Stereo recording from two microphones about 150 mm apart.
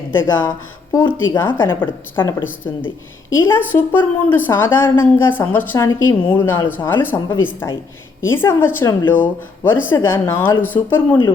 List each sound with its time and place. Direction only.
0.1 s a woman's voice: 15° left (ahead or behind)